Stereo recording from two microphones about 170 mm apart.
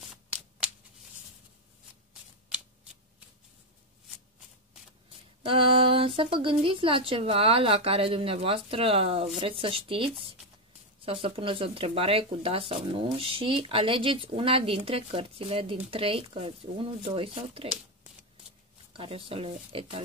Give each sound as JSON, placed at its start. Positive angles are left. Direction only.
{"t": 0.1, "sound": "shuffling cards", "side_deg": -5}
{"t": 5.1, "sound": "speech", "side_deg": -30}
{"t": 18.9, "sound": "speech", "side_deg": -35}